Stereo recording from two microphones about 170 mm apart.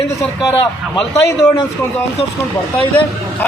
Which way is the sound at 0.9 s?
15° left (ahead or behind).